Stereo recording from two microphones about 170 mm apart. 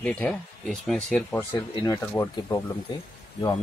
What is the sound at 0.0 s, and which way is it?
Speech, 5° left (ahead or behind).